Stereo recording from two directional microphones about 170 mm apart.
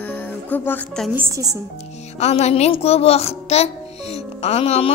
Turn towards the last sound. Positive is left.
turn(degrees=35)  # may be behind; listen again after turning